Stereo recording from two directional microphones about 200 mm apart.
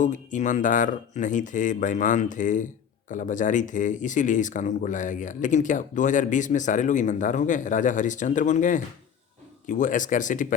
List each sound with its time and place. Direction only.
0.0 s speech: 40° left (ahead or behind)